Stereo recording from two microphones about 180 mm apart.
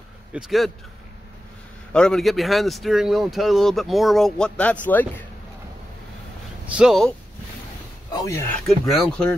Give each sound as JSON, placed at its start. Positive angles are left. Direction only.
{"t": 0.3, "sound": "speech", "side_deg": 0}
{"t": 1.9, "sound": "speech", "side_deg": 5}
{"t": 6.7, "sound": "speech", "side_deg": -5}
{"t": 8.1, "sound": "speech", "side_deg": 20}
{"t": 8.6, "sound": "speech", "side_deg": 0}